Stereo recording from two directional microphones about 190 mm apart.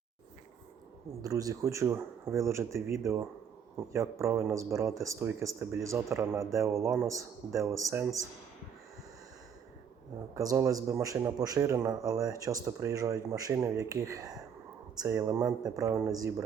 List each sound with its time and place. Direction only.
1.2 s a man's voice: 20° right (ahead or behind)
10.3 s a man's voice: 15° right (ahead or behind)